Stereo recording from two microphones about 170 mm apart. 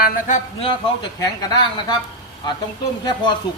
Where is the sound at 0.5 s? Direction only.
30° left (ahead or behind).